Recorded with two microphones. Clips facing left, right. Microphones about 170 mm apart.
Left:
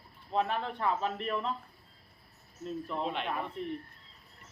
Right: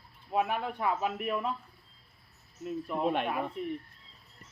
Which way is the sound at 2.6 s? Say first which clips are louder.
Right 4 dB; 10° right (ahead or behind).